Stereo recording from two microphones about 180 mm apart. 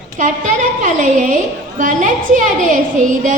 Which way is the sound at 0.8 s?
45° right (ahead or behind).